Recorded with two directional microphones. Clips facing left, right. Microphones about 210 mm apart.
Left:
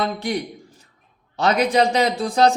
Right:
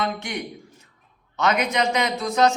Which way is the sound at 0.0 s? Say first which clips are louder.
Left 4 dB; 35° left (ahead or behind).